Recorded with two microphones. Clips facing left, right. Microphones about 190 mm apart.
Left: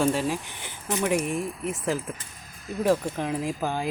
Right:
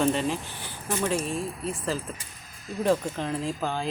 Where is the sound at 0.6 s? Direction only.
20° left (ahead or behind).